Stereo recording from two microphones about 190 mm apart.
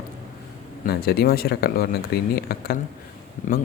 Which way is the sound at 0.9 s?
55° left (ahead or behind).